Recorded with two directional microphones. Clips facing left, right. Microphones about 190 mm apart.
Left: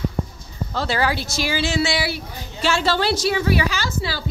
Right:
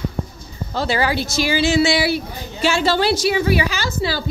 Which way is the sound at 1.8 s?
15° right (ahead or behind).